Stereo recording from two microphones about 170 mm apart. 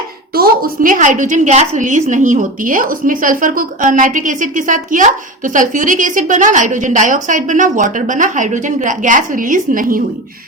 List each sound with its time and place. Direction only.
0.3 s a woman's voice: 60° right (ahead or behind)